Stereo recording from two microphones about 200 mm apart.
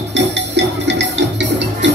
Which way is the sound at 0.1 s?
60° right (ahead or behind).